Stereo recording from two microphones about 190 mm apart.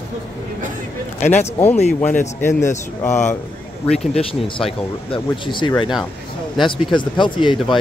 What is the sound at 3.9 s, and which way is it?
Speech, 5° left (ahead or behind).